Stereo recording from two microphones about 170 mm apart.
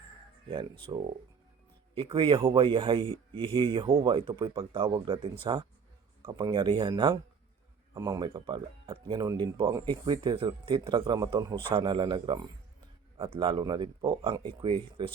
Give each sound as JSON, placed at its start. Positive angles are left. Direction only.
{"t": 0.5, "sound": "speech", "side_deg": -30}